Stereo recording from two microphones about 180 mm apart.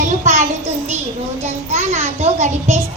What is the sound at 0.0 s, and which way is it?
A child's voice, 40° right (ahead or behind).